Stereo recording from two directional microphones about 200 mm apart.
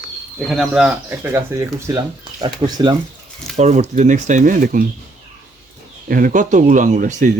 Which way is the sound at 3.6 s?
35° right (ahead or behind).